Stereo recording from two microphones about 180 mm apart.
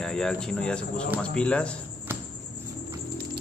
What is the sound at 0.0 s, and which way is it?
Speech, 5° left (ahead or behind).